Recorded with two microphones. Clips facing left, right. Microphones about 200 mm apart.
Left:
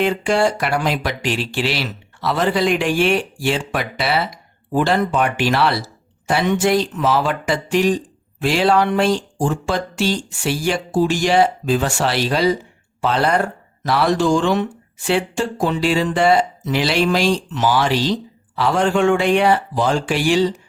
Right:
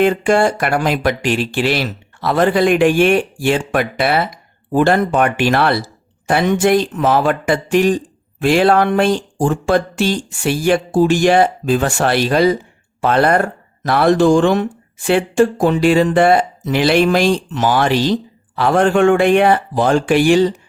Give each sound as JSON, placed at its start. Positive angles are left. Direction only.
{"t": 0.0, "sound": "speech", "side_deg": -50}